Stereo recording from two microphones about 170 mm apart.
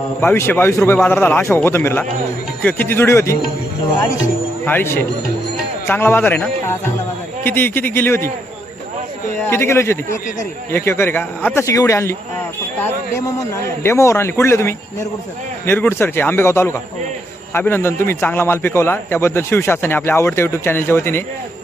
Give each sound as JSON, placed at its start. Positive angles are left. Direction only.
{"t": 0.2, "sound": "a man's voice", "side_deg": 15}
{"t": 9.4, "sound": "a man's voice", "side_deg": 15}